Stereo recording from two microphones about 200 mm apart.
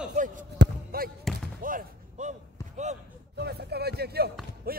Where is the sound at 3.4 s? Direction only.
55° right (ahead or behind).